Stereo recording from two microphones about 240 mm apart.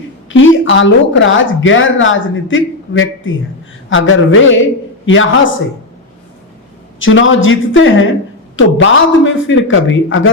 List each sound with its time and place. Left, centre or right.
0.3 s a woman's voice: left
7.0 s a woman's voice: left